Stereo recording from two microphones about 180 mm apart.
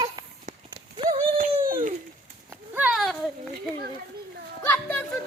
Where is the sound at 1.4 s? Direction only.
50° right (ahead or behind).